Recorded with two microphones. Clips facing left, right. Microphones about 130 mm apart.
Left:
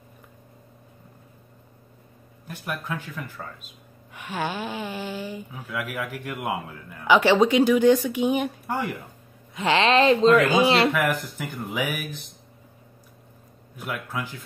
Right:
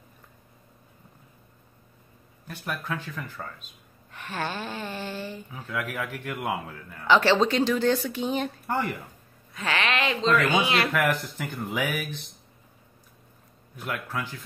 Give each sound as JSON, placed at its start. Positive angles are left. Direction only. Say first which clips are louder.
{"t": 2.4, "sound": "speech", "louder": "left 1 dB", "side_deg": 15}
{"t": 3.4, "sound": "speech", "louder": "even", "side_deg": 0}
{"t": 4.1, "sound": "speech", "louder": "left 3 dB", "side_deg": 10}
{"t": 9.5, "sound": "speech", "louder": "left 7 dB", "side_deg": 25}
{"t": 10.9, "sound": "speech", "louder": "left 1 dB", "side_deg": 5}
{"t": 13.7, "sound": "speech", "louder": "left 1 dB", "side_deg": 10}